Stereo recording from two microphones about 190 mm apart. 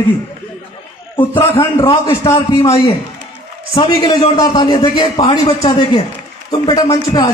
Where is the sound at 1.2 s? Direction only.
10° left (ahead or behind).